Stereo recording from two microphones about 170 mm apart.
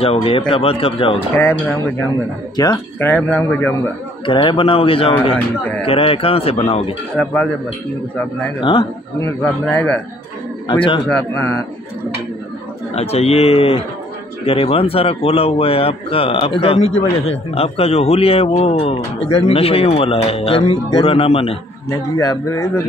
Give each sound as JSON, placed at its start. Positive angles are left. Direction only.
{"t": 0.0, "sound": "speech", "side_deg": 35}
{"t": 1.3, "sound": "speech", "side_deg": 10}
{"t": 2.5, "sound": "speech", "side_deg": 25}
{"t": 3.0, "sound": "speech", "side_deg": 10}
{"t": 4.3, "sound": "speech", "side_deg": 30}
{"t": 7.2, "sound": "speech", "side_deg": 10}
{"t": 8.5, "sound": "speech", "side_deg": 30}
{"t": 9.4, "sound": "speech", "side_deg": 10}
{"t": 10.7, "sound": "speech", "side_deg": 30}
{"t": 11.1, "sound": "speech", "side_deg": 10}
{"t": 12.9, "sound": "speech", "side_deg": 35}
{"t": 21.8, "sound": "speech", "side_deg": 20}